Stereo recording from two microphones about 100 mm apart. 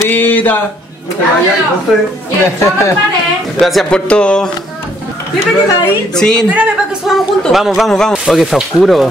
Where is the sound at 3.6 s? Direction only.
5° left (ahead or behind).